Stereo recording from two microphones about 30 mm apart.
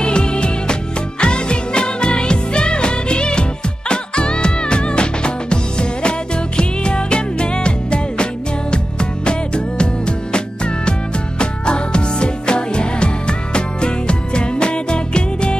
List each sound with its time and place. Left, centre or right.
0.0 s music: left